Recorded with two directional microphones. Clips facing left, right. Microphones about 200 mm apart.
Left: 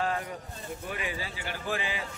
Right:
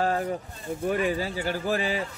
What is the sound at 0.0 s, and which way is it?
A man's voice, 40° right (ahead or behind).